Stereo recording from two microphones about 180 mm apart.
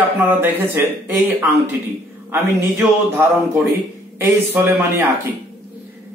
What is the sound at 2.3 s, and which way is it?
A man's voice, 15° right (ahead or behind).